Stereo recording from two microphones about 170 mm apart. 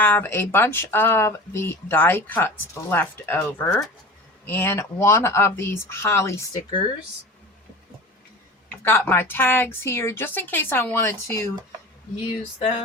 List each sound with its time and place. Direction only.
0.0 s a woman's voice: 10° left (ahead or behind)
8.8 s a woman's voice: 10° left (ahead or behind)
12.5 s a sound: 35° left (ahead or behind)